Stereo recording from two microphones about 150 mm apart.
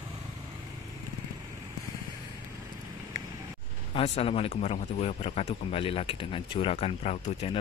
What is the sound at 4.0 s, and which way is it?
Speech, 40° left (ahead or behind).